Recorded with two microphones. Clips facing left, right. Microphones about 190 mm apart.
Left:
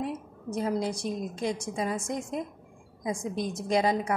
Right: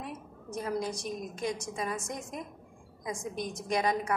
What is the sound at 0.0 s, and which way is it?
A woman's voice, 30° left (ahead or behind).